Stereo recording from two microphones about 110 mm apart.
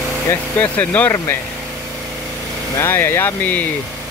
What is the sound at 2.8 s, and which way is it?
Speech, 20° left (ahead or behind).